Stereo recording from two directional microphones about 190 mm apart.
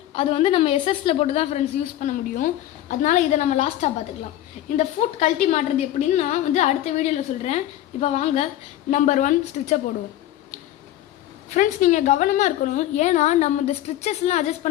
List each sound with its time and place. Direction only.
0.1 s a woman's voice: 30° left (ahead or behind)
11.4 s a woman's voice: 40° left (ahead or behind)